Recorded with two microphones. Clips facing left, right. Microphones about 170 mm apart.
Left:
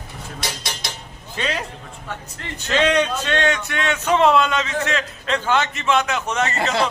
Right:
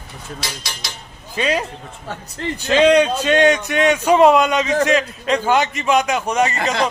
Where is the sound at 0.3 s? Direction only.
55° left (ahead or behind).